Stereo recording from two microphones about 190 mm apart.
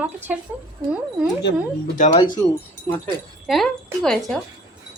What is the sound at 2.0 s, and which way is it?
Speech, 40° left (ahead or behind).